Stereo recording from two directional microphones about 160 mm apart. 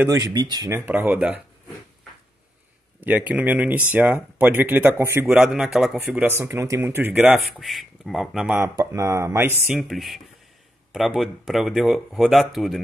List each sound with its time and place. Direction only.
0.1 s speech: 25° right (ahead or behind); by 1.4 s 10° right (ahead or behind)
3.0 s speech: 10° right (ahead or behind)
6.2 s speech: 15° right (ahead or behind)
8.5 s speech: 20° right (ahead or behind)
9.8 s speech: centre (ahead or behind)